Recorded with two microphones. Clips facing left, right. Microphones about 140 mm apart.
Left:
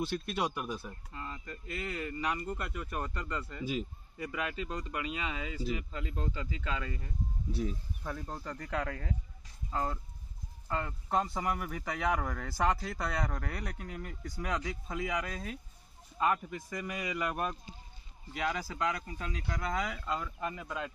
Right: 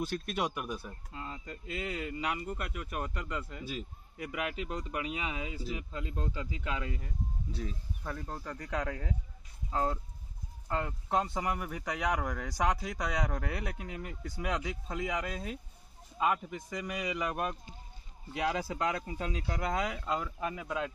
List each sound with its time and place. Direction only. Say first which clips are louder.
0.1 s speech: even; centre (ahead or behind)
1.1 s speech: right 1 dB; 15° right (ahead or behind)
8.0 s speech: right 1 dB; centre (ahead or behind)
9.7 s speech: right 3 dB; 15° right (ahead or behind)
11.1 s speech: even; centre (ahead or behind)
12.5 s speech: left 1 dB; 10° right (ahead or behind)
18.3 s speech: right 3 dB; 25° right (ahead or behind)
20.1 s speech: right 2 dB; 10° right (ahead or behind)